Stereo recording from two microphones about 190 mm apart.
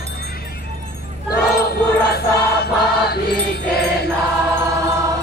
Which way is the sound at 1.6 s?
55° left (ahead or behind).